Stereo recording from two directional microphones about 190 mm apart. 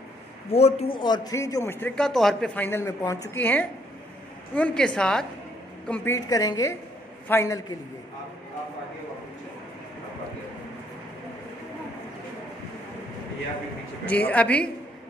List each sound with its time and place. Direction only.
0.6 s a man's voice: 35° left (ahead or behind)
0.9 s a woman's voice: 20° left (ahead or behind)
14.0 s speech: 5° left (ahead or behind)